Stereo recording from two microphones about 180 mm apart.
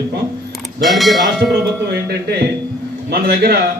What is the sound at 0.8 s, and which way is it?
Speech, centre (ahead or behind).